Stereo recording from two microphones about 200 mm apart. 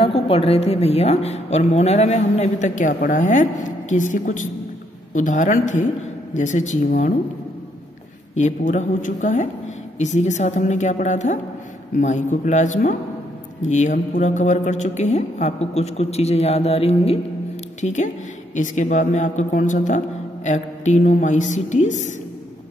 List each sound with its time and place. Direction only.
0.0 s a woman's voice: 30° left (ahead or behind)
8.4 s a woman's voice: 35° left (ahead or behind)